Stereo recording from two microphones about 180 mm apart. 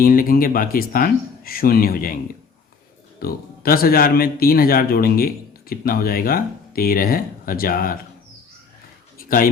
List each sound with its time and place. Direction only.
0.0 s speech: 50° left (ahead or behind)
3.2 s a man's voice: 55° left (ahead or behind)
9.1 s a sound: 50° left (ahead or behind)